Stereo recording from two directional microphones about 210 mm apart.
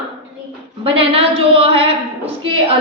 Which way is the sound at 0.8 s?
25° right (ahead or behind).